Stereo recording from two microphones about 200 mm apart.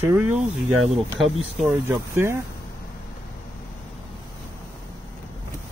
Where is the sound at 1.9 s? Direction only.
10° right (ahead or behind).